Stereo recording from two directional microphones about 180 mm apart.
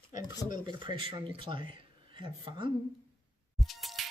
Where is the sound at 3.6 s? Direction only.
Centre (ahead or behind).